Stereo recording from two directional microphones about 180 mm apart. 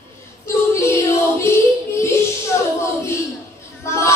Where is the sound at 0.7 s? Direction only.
15° left (ahead or behind).